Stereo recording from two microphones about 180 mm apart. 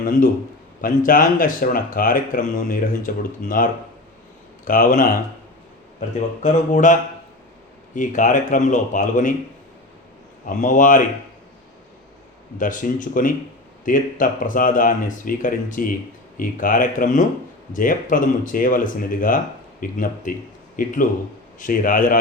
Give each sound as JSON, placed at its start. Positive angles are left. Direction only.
{"t": 0.0, "sound": "a man's voice", "side_deg": 50}
{"t": 6.1, "sound": "speech", "side_deg": 45}
{"t": 7.9, "sound": "speech", "side_deg": 45}
{"t": 10.4, "sound": "speech", "side_deg": 45}
{"t": 12.5, "sound": "speech", "side_deg": 45}